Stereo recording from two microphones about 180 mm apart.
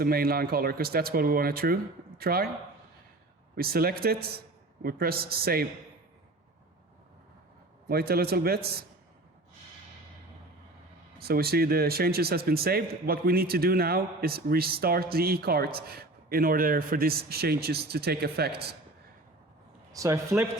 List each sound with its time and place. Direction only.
0.0 s speech: 55° right (ahead or behind)
3.5 s speech: 55° right (ahead or behind)
7.9 s speech: 60° right (ahead or behind)
11.2 s speech: 60° right (ahead or behind)
19.9 s a man's voice: 15° right (ahead or behind)